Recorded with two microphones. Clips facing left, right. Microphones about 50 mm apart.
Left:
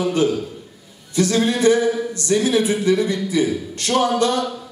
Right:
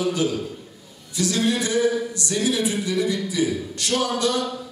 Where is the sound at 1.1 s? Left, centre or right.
Left.